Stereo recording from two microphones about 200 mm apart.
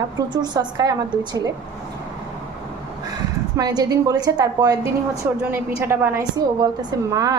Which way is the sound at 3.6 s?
20° right (ahead or behind).